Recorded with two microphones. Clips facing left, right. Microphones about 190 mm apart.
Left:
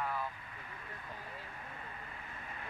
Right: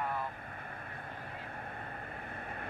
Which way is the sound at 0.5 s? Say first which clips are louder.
Right 4 dB; 55° right (ahead or behind).